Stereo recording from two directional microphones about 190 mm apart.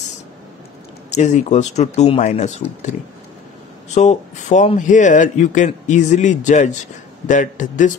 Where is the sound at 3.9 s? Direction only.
40° left (ahead or behind).